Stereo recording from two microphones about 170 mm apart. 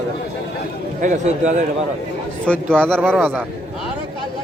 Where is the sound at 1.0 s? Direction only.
45° right (ahead or behind).